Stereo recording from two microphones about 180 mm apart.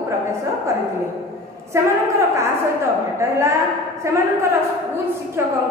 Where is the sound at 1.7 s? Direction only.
15° right (ahead or behind).